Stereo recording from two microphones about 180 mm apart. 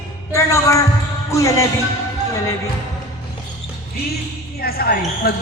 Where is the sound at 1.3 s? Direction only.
15° left (ahead or behind).